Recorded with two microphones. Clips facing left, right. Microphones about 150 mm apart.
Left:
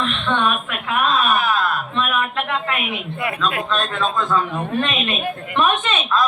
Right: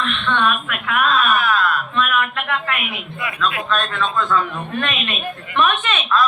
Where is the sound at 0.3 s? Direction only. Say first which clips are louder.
Right 1 dB; 30° left (ahead or behind).